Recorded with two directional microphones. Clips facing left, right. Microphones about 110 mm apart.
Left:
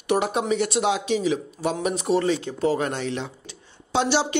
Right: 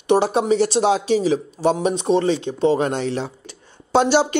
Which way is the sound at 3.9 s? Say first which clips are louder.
Right 6 dB; 45° right (ahead or behind).